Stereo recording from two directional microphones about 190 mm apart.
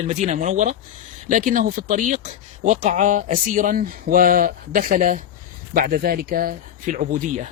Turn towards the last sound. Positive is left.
turn(degrees=-45)  # may be behind; listen again after turning